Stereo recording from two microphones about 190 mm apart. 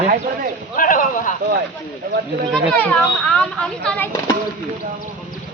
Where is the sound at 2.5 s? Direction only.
5° left (ahead or behind).